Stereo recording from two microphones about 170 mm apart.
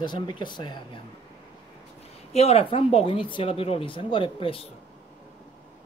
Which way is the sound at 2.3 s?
40° left (ahead or behind).